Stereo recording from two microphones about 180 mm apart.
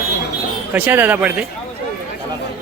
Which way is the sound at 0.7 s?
10° right (ahead or behind).